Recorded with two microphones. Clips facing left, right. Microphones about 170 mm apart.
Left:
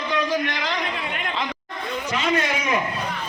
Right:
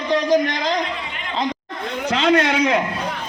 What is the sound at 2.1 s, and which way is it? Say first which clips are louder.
Speech: right 7 dB; 75° right (ahead or behind).